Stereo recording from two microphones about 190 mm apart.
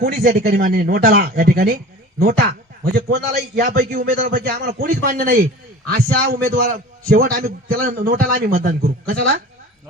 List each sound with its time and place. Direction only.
0.0 s speech: 50° right (ahead or behind)